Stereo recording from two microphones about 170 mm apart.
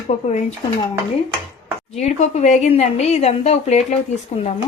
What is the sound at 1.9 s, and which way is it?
Speech, 40° left (ahead or behind).